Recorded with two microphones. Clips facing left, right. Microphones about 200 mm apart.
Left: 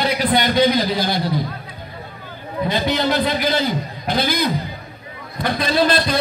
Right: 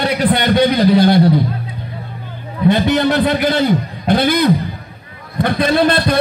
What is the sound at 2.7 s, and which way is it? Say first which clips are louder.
A man's voice: right 4 dB; 60° right (ahead or behind).